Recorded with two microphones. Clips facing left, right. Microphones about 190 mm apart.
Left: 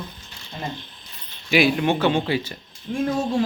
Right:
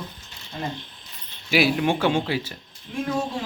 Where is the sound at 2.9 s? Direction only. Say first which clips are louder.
Left 5 dB; 45° left (ahead or behind).